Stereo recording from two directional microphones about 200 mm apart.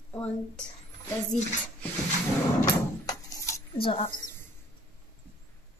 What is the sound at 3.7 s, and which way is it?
Speech, 25° left (ahead or behind).